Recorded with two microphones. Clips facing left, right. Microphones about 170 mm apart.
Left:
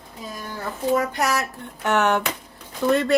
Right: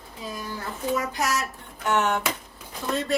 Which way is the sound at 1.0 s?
60° left (ahead or behind).